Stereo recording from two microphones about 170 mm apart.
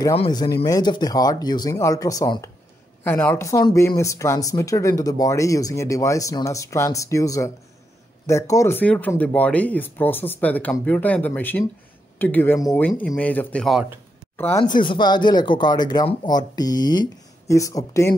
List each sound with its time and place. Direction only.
0.1 s speech: 30° left (ahead or behind)
3.0 s speech: 10° left (ahead or behind)
14.3 s a sound: 15° left (ahead or behind)
14.6 s speech: 30° left (ahead or behind)